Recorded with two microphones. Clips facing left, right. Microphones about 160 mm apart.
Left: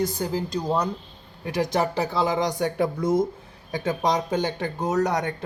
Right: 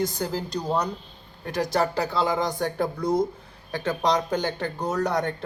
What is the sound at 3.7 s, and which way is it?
A man's voice, 15° left (ahead or behind).